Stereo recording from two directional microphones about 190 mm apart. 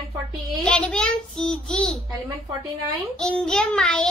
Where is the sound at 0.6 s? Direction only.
5° left (ahead or behind).